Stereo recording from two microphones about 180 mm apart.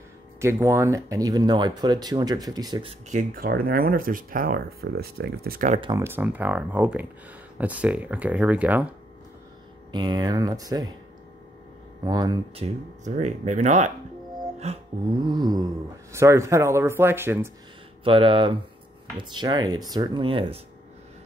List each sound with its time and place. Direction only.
0.4 s speech: 15° right (ahead or behind); by 5.8 s 50° right (ahead or behind)
5.8 s speech: 25° right (ahead or behind)
6.0 s speech: 10° right (ahead or behind)
9.9 s speech: 25° right (ahead or behind)
12.0 s speech: 25° right (ahead or behind)
12.6 s speech: 40° right (ahead or behind); by 17.5 s 15° right (ahead or behind)
18.0 s speech: 30° right (ahead or behind)